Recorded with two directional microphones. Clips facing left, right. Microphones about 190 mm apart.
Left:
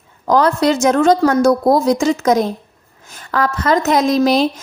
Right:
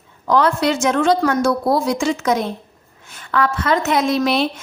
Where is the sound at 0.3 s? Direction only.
40° left (ahead or behind).